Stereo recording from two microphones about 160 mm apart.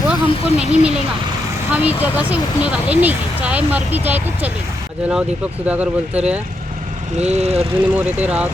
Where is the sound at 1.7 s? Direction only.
10° right (ahead or behind).